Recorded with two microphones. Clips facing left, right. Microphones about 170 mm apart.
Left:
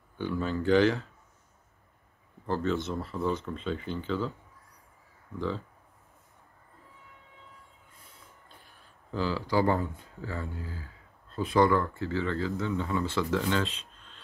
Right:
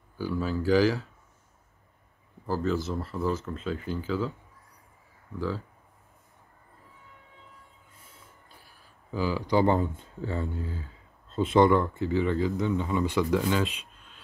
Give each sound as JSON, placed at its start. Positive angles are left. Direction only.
{"t": 0.2, "sound": "speech", "side_deg": -5}
{"t": 2.4, "sound": "speech", "side_deg": -5}
{"t": 8.5, "sound": "speech", "side_deg": -5}